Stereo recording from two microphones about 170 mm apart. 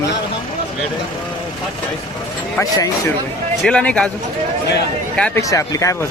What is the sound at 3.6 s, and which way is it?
Speech, 5° left (ahead or behind).